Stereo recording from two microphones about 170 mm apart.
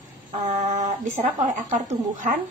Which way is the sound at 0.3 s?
40° right (ahead or behind).